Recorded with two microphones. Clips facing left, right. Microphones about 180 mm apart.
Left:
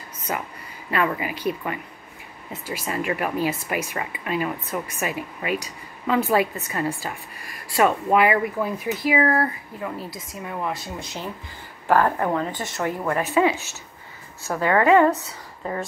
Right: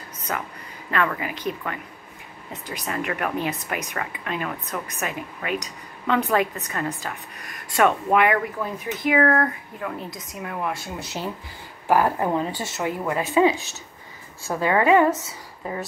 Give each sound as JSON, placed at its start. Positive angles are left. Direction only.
{"t": 0.3, "sound": "speech", "side_deg": 10}
{"t": 11.9, "sound": "a woman's voice", "side_deg": -15}